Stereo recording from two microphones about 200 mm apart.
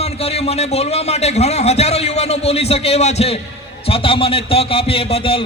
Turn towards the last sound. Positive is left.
turn(degrees=25)  # may be behind; listen again after turning